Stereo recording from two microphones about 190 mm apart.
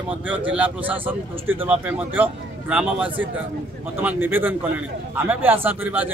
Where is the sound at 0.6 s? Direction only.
10° right (ahead or behind).